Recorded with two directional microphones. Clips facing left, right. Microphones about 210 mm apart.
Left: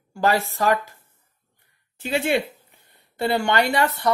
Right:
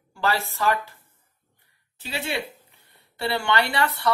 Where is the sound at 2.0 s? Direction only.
50° left (ahead or behind).